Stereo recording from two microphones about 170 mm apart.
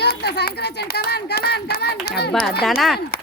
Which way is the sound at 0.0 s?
70° left (ahead or behind).